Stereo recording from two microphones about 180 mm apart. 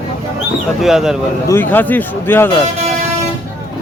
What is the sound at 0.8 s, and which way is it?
Speech, centre (ahead or behind).